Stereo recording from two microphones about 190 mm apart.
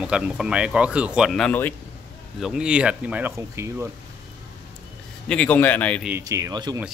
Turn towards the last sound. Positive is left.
turn(degrees=-20)  # may be behind; listen again after turning